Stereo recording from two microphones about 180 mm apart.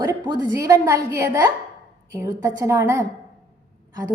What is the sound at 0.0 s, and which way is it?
A woman's voice, 20° right (ahead or behind).